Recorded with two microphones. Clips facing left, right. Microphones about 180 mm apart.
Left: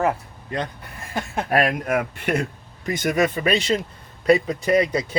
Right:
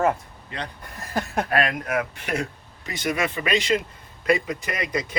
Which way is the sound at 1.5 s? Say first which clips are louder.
Left 5 dB; 50° left (ahead or behind).